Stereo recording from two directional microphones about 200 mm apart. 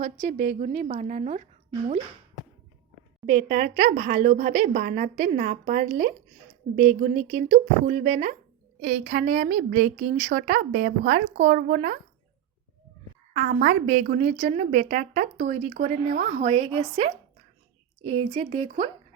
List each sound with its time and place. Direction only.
0.0 s a woman's voice: 40° right (ahead or behind)
3.2 s a woman's voice: 40° right (ahead or behind)
13.3 s a woman's voice: 45° right (ahead or behind)